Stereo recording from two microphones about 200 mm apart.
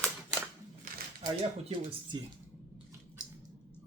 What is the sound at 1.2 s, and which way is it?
Speech, 25° right (ahead or behind).